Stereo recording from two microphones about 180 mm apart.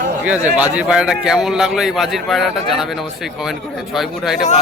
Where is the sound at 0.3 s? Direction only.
10° right (ahead or behind).